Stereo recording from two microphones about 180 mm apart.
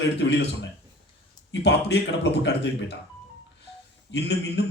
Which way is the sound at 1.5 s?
75° left (ahead or behind).